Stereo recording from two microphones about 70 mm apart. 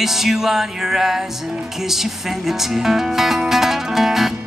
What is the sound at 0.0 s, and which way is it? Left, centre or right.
Speech, centre.